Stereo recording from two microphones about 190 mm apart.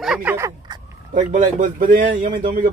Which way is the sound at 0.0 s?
5° right (ahead or behind).